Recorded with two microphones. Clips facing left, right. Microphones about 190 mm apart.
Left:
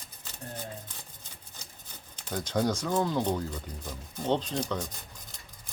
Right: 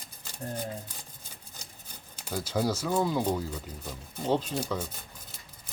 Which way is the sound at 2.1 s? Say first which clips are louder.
Even; 10° right (ahead or behind).